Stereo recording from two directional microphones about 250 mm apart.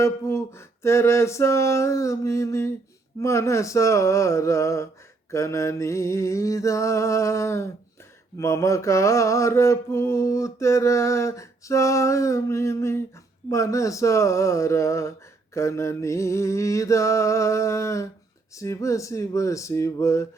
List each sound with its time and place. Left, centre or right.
0.0 s mantra: centre